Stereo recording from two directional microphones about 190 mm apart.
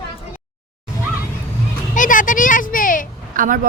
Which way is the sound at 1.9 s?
45° left (ahead or behind).